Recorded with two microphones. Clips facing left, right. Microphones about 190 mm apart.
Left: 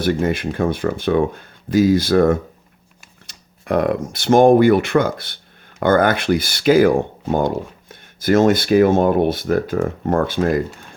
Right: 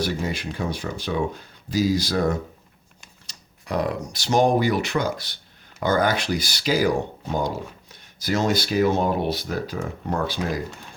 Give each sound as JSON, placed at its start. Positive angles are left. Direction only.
{"t": 0.0, "sound": "speech", "side_deg": 55}